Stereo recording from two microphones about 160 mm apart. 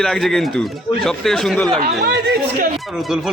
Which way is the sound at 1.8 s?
90° right.